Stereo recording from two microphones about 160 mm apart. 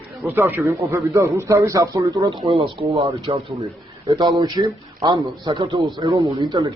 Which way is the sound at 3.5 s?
20° right (ahead or behind).